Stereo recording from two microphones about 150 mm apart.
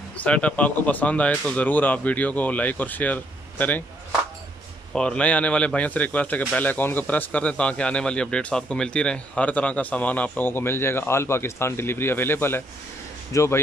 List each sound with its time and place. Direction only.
0.2 s a man's voice: 10° left (ahead or behind)
4.9 s a man's voice: 5° left (ahead or behind)